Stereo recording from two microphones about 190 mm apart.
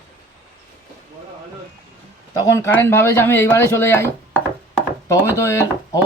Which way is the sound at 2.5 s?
15° left (ahead or behind).